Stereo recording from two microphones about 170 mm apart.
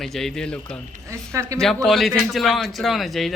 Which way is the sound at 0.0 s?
Centre (ahead or behind).